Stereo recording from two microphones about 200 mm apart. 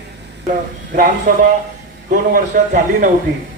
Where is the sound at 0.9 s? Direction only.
45° right (ahead or behind).